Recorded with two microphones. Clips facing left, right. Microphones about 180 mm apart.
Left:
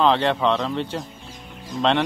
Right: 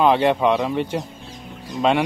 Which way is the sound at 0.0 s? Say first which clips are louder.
Right 3 dB; 10° right (ahead or behind).